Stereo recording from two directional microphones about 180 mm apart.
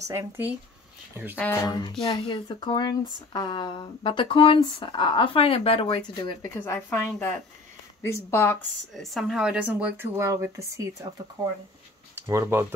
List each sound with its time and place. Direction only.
0.1 s speech: 15° right (ahead or behind)
1.4 s speech: 15° left (ahead or behind)
6.5 s speech: 15° left (ahead or behind)
8.9 s speech: centre (ahead or behind)